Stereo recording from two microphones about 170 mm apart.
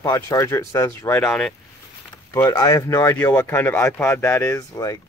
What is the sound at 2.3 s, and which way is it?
Speech, 20° left (ahead or behind).